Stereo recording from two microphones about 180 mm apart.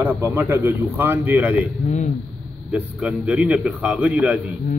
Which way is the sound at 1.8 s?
40° left (ahead or behind).